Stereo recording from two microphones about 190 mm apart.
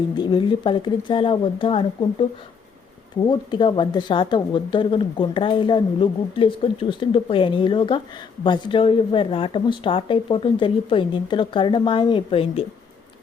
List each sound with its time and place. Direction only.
0.1 s speech: 25° left (ahead or behind)
3.2 s speech: 25° left (ahead or behind)